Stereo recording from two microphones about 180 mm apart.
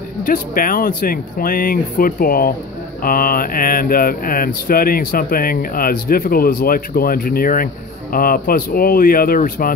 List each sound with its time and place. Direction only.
0.2 s speech: 50° left (ahead or behind)